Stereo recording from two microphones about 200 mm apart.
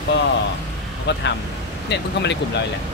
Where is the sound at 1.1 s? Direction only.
60° left (ahead or behind).